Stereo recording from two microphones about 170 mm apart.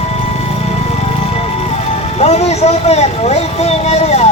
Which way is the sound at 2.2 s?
40° left (ahead or behind).